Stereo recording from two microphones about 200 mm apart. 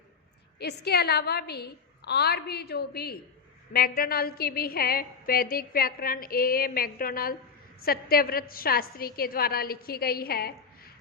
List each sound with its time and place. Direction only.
0.6 s a woman's voice: 55° left (ahead or behind)